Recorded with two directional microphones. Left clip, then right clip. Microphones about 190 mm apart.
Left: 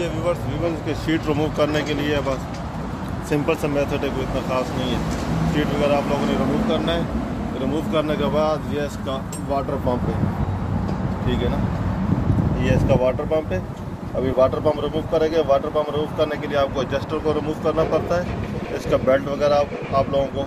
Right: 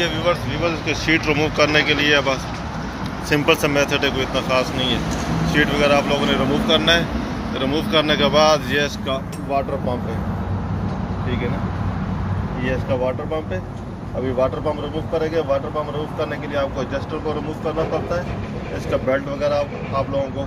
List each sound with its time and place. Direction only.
0.0 s speech: 5° left (ahead or behind)
0.8 s speech: 25° left (ahead or behind); by 2.3 s 5° left (ahead or behind)
3.4 s speech: centre (ahead or behind)
6.8 s speech: 10° left (ahead or behind)
12.6 s speech: 35° left (ahead or behind)
15.1 s speech: 45° left (ahead or behind)
19.0 s speech: 35° left (ahead or behind)